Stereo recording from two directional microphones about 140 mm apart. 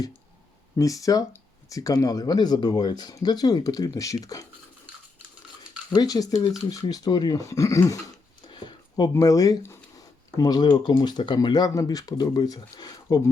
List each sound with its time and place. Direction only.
0.8 s speech: 25° left (ahead or behind)
5.9 s speech: 25° left (ahead or behind)